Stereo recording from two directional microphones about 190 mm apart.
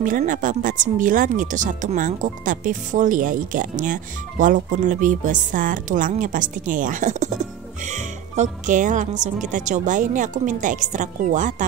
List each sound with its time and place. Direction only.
0.0 s a woman's voice: 45° right (ahead or behind)